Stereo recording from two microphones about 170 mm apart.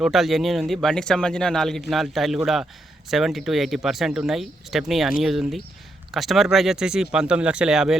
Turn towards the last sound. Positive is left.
turn(degrees=-5)  # may be behind; listen again after turning